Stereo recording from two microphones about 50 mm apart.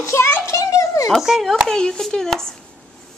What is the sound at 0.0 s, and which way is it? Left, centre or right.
Children playing, left.